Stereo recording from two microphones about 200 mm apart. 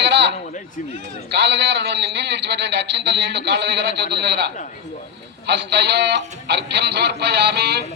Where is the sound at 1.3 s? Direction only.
60° right (ahead or behind).